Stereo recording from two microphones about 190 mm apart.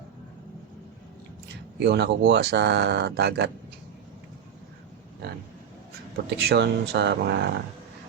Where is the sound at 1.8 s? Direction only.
65° right (ahead or behind).